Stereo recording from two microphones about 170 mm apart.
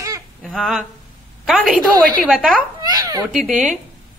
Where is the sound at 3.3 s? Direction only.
5° right (ahead or behind).